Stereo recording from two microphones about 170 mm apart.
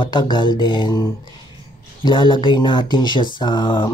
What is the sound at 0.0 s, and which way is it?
Speech, 25° left (ahead or behind).